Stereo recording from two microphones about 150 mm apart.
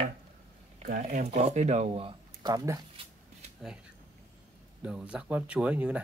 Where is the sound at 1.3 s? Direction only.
50° right (ahead or behind).